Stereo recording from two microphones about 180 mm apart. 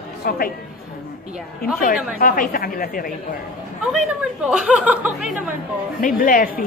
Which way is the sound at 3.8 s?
Centre (ahead or behind).